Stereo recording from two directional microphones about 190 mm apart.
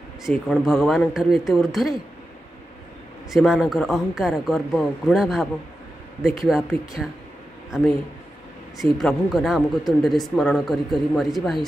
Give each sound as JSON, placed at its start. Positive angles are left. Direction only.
{"t": 0.5, "sound": "speech", "side_deg": 0}
{"t": 3.3, "sound": "speech", "side_deg": 0}
{"t": 8.7, "sound": "speech", "side_deg": 0}